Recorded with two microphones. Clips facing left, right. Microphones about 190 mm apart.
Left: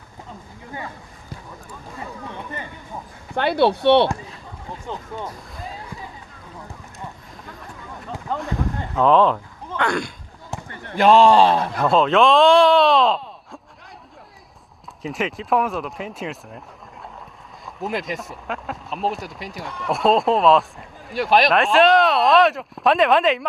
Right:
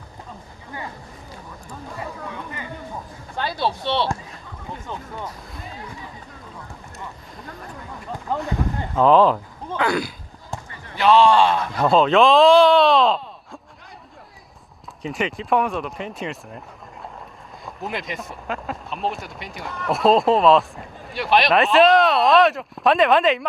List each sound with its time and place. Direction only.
3.3 s speech: 65° left (ahead or behind)
8.3 s speech: centre (ahead or behind)
10.8 s speech: 50° left (ahead or behind)
11.7 s speech: centre (ahead or behind)
15.0 s speech: centre (ahead or behind)